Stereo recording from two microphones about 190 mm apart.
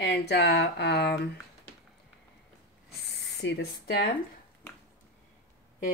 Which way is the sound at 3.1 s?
65° left (ahead or behind).